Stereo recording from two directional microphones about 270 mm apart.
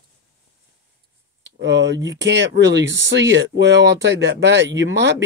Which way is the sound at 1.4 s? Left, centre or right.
Right.